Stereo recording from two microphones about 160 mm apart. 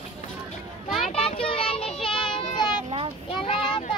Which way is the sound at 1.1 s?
35° left (ahead or behind).